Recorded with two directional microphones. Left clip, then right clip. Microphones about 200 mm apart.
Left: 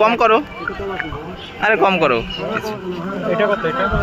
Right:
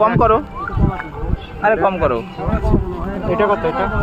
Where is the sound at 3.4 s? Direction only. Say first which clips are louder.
Right 2 dB; 55° right (ahead or behind).